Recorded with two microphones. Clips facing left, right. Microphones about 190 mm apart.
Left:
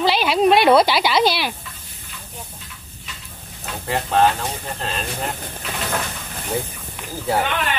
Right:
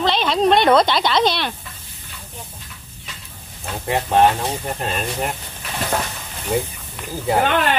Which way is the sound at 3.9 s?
20° right (ahead or behind).